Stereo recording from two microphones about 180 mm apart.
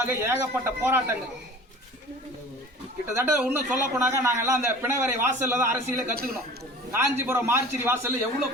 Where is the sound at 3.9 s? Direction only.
10° right (ahead or behind).